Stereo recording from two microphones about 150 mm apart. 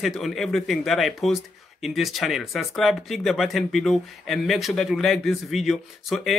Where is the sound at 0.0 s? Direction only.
Centre (ahead or behind).